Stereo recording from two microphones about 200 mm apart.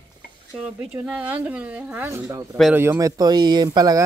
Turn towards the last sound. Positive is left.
turn(degrees=-15)  # may be behind; listen again after turning